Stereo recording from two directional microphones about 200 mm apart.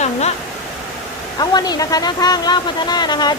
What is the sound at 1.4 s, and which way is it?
Speech, 20° left (ahead or behind).